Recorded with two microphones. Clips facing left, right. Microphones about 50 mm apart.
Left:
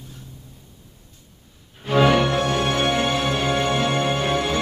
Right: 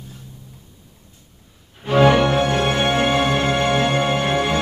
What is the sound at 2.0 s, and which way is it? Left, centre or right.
Music, right.